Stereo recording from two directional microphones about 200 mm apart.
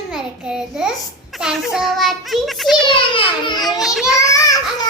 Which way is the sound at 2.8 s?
25° left (ahead or behind).